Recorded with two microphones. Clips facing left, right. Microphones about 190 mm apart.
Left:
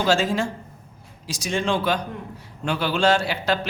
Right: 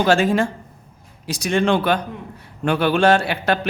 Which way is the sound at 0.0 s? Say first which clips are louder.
Right 4 dB; 60° right (ahead or behind).